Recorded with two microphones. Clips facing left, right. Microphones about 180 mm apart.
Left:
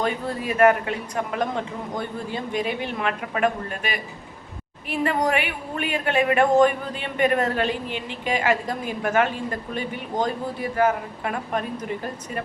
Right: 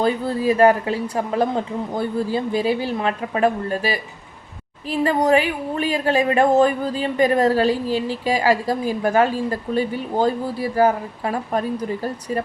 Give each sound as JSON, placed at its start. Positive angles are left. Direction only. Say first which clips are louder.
{"t": 0.0, "sound": "a woman's voice", "louder": "right 6 dB", "side_deg": -30}